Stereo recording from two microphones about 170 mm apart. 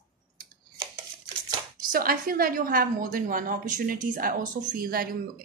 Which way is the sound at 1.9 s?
60° right (ahead or behind).